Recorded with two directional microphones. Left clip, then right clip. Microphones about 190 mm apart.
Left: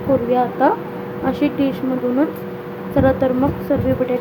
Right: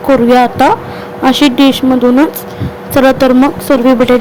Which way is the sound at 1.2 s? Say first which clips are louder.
Right 12 dB; 45° right (ahead or behind).